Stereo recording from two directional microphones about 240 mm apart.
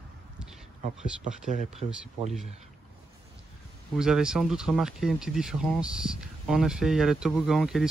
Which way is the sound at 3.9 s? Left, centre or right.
Centre.